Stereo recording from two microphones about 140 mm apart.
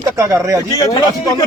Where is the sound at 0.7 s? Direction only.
25° left (ahead or behind).